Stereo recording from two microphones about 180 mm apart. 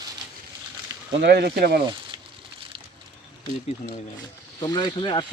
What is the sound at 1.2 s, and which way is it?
Speech, 65° right (ahead or behind).